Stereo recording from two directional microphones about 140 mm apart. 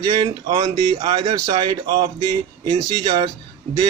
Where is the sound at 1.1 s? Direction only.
40° right (ahead or behind).